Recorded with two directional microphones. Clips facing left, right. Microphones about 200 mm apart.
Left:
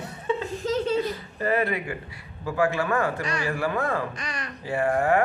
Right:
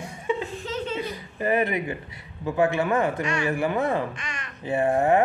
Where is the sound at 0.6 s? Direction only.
40° left (ahead or behind).